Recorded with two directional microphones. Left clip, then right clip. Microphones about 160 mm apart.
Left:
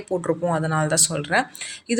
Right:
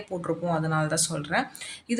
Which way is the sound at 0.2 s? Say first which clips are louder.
Left 3 dB; 30° left (ahead or behind).